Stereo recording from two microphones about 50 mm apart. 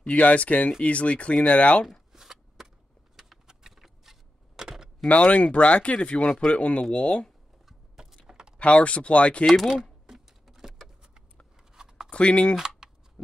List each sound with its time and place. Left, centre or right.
0.0 s speech: left
1.9 s shuffling cards: centre
3.2 s vehicle: centre
5.0 s speech: left
7.6 s a sound: centre
8.3 s typing: centre
8.5 s speech: left
9.5 s speech: centre
10.0 s typing: centre
11.7 s a sound: centre
12.1 s speech: left
12.5 s typing: centre